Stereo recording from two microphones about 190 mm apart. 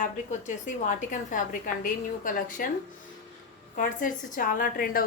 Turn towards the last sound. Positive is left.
turn(degrees=50)  # may be behind; listen again after turning